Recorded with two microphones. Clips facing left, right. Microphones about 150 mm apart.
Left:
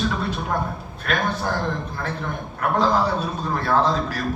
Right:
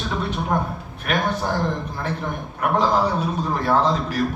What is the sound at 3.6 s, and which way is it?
Speech, 15° right (ahead or behind).